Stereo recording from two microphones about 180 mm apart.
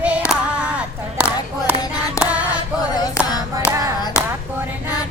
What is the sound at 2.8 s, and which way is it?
Clapping, 20° left (ahead or behind).